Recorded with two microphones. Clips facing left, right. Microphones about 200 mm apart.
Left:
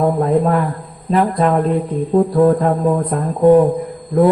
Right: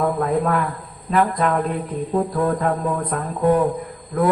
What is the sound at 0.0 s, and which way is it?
A man's voice, 25° left (ahead or behind).